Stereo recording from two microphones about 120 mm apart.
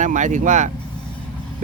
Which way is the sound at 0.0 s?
90° right.